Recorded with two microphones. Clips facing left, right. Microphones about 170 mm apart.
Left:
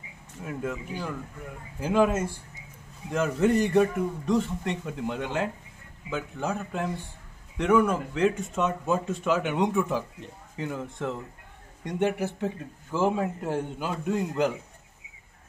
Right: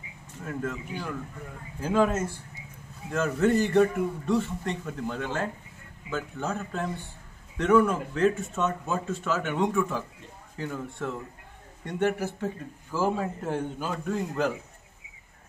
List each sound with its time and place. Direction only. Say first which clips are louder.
0.4 s speech: even; 10° left (ahead or behind)